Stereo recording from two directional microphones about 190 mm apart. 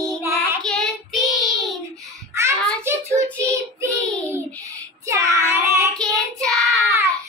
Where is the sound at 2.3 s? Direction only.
15° right (ahead or behind).